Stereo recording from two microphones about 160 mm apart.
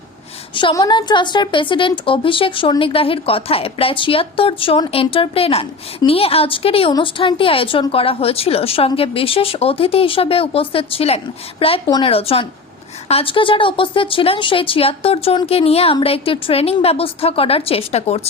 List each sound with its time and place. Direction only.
0.5 s a woman's voice: 25° left (ahead or behind)